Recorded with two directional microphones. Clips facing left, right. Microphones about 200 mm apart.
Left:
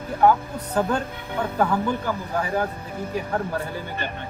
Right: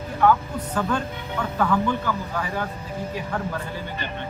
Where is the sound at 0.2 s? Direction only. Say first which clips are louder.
Left 1 dB; 35° left (ahead or behind).